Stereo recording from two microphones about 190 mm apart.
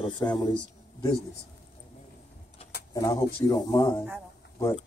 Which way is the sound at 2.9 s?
20° left (ahead or behind).